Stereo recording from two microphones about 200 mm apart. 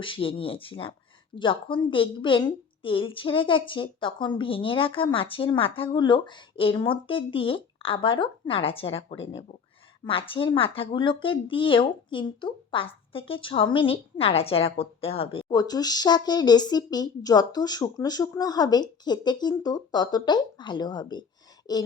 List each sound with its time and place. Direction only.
0.0 s speech: 25° left (ahead or behind)